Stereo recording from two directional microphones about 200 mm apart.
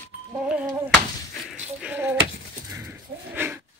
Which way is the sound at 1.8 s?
10° right (ahead or behind).